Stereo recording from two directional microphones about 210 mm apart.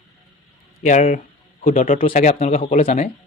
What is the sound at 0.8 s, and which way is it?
Speech, 35° left (ahead or behind).